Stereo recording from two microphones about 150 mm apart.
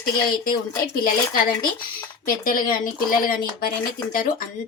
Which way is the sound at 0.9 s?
70° left (ahead or behind).